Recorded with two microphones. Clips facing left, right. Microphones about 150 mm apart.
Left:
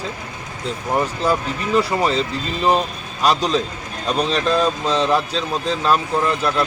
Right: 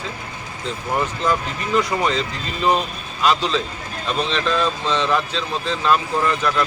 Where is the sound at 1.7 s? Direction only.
35° left (ahead or behind).